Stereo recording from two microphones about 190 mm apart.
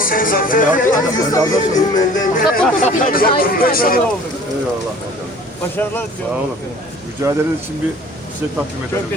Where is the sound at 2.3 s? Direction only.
45° left (ahead or behind).